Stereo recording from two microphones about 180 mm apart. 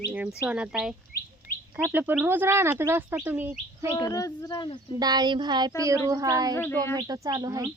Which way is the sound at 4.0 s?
20° left (ahead or behind).